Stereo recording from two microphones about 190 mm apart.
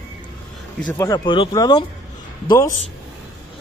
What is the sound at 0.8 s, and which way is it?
Speech, 15° left (ahead or behind).